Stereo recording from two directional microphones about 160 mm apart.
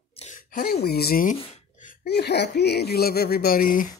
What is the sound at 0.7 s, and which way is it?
Speech, 85° left.